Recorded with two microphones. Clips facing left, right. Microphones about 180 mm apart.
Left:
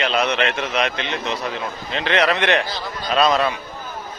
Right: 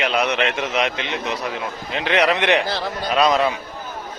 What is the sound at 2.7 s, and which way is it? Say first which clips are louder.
Speech: right 5 dB; 65° right (ahead or behind).